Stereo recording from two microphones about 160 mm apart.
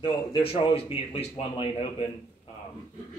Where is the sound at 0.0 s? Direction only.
30° left (ahead or behind).